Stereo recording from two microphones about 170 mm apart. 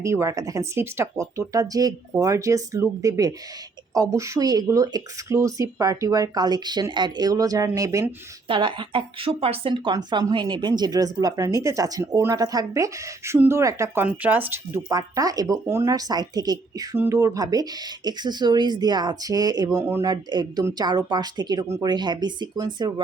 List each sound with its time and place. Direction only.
0.0 s a woman's voice: 15° right (ahead or behind)
8.4 s a woman's voice: 30° right (ahead or behind)